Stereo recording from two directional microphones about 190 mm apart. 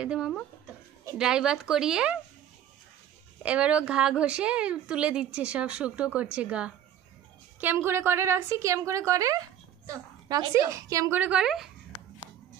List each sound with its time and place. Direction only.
0.0 s a woman's voice: 5° right (ahead or behind)
3.4 s a woman's voice: 5° right (ahead or behind)